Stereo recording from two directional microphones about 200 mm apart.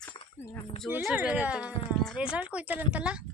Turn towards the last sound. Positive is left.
turn(degrees=-5)  # may be behind; listen again after turning